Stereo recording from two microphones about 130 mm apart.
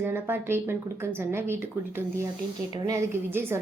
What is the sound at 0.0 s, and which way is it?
A woman's voice, 15° right (ahead or behind).